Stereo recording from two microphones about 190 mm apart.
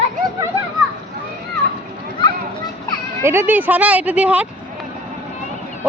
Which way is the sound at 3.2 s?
15° right (ahead or behind).